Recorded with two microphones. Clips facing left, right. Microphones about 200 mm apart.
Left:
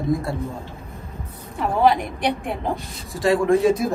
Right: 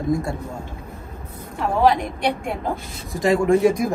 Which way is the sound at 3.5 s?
15° right (ahead or behind).